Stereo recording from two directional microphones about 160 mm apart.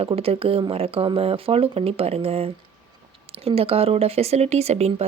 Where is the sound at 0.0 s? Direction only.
35° right (ahead or behind).